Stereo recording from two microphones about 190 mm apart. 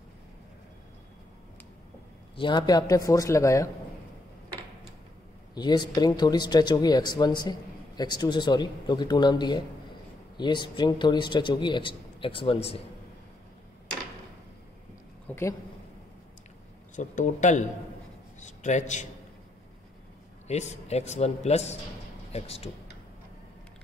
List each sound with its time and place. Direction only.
2.3 s a man's voice: 25° left (ahead or behind)
5.5 s a man's voice: 20° left (ahead or behind)
15.2 s a woman's voice: 15° left (ahead or behind)
16.9 s a man's voice: 40° left (ahead or behind)
20.4 s a man's voice: 35° left (ahead or behind)